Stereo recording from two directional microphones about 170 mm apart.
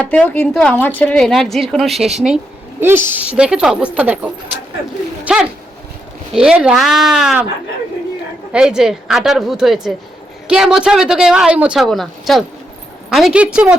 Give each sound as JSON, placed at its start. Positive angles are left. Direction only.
{"t": 0.0, "sound": "a woman's voice", "side_deg": 10}
{"t": 8.5, "sound": "a woman's voice", "side_deg": -5}